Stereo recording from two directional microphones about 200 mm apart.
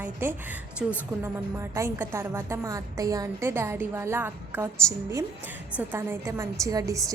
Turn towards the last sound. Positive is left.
turn(degrees=-15)  # may be behind; listen again after turning